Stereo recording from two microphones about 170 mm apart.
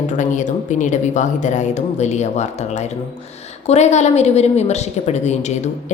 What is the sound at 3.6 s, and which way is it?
A woman's voice, 40° left (ahead or behind).